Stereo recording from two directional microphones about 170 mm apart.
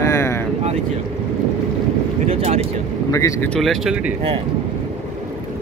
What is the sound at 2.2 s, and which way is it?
Speech, 40° right (ahead or behind).